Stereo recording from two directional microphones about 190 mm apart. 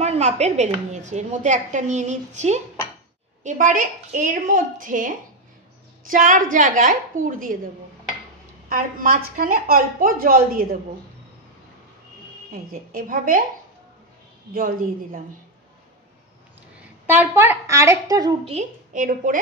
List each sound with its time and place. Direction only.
0.0 s a woman's voice: 35° right (ahead or behind)
12.5 s a woman's voice: 50° right (ahead or behind)
14.5 s a woman's voice: 45° right (ahead or behind)
17.0 s a woman's voice: 10° right (ahead or behind)
18.4 s a woman's voice: 35° right (ahead or behind)